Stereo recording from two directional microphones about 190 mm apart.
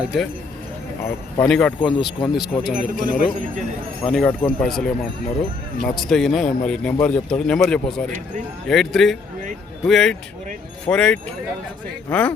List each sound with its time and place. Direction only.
0.0 s speech: 5° right (ahead or behind)
1.0 s speech: 10° left (ahead or behind)
2.7 s speech: 45° right (ahead or behind)
4.0 s speech: 10° left (ahead or behind)